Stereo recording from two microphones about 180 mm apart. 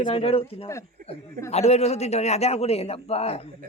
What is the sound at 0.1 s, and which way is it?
A man's voice, 30° left (ahead or behind).